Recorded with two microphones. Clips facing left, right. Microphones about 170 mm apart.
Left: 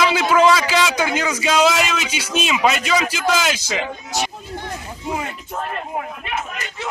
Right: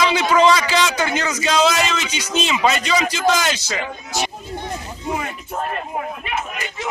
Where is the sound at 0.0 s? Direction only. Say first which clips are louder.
Even; 5° left (ahead or behind).